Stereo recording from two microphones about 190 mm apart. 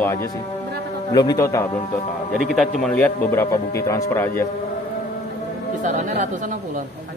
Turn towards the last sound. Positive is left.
turn(degrees=-40)  # may be behind; listen again after turning